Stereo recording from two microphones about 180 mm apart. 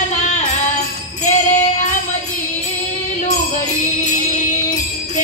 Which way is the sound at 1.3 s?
40° left (ahead or behind).